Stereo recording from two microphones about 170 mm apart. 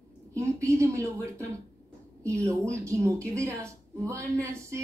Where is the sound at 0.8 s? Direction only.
15° right (ahead or behind).